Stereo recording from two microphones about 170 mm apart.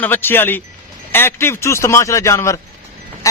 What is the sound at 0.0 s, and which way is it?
A man's voice, 10° left (ahead or behind).